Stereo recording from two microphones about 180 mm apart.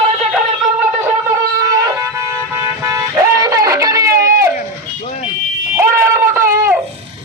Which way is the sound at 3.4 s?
20° right (ahead or behind).